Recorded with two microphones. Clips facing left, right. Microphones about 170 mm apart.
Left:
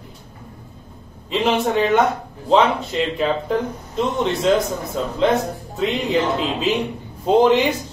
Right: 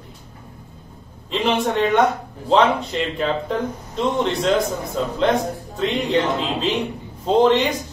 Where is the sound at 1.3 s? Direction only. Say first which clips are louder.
Left 1 dB; centre (ahead or behind).